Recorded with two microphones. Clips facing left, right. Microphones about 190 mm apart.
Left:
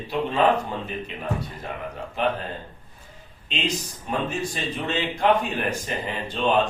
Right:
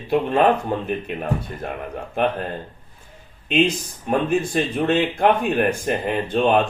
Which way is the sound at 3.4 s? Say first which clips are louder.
Right 9 dB; 55° right (ahead or behind).